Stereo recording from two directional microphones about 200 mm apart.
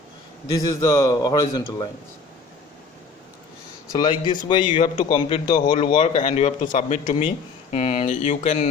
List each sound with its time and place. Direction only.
0.5 s a man's voice: 15° left (ahead or behind)
3.9 s a man's voice: 20° left (ahead or behind)